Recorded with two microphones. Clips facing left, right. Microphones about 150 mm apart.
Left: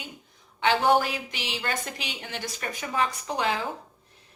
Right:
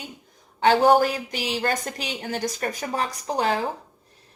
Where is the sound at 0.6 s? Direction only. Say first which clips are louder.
Right 5 dB; 40° right (ahead or behind).